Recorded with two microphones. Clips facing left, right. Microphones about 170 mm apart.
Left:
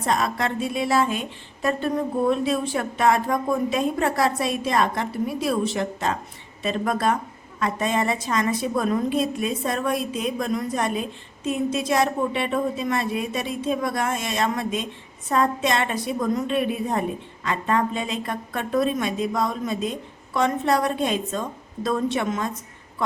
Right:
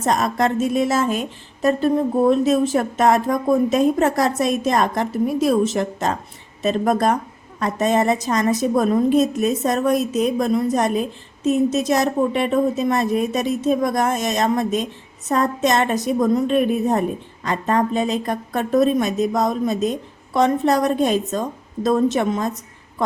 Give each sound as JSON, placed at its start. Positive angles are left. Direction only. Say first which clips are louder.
{"t": 0.0, "sound": "a woman's voice", "louder": "right 5 dB", "side_deg": -45}